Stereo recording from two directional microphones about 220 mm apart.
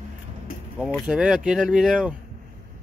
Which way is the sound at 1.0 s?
5° right (ahead or behind).